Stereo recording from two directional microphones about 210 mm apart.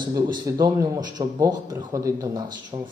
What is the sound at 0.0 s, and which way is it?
Speech, 20° right (ahead or behind).